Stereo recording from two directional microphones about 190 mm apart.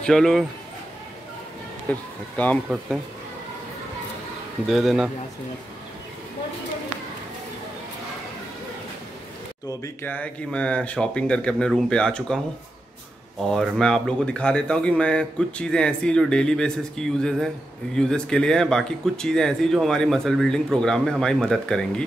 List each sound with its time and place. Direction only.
0.0 s speech: centre (ahead or behind)
1.9 s speech: 5° left (ahead or behind)
4.6 s speech: centre (ahead or behind)
9.7 s speech: 10° left (ahead or behind)
13.4 s speech: centre (ahead or behind)